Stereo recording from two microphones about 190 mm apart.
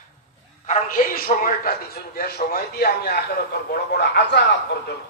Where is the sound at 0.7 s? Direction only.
45° left (ahead or behind); by 4.4 s 65° left (ahead or behind).